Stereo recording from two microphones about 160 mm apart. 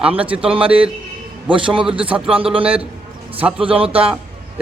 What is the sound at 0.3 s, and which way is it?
Speech, 35° right (ahead or behind).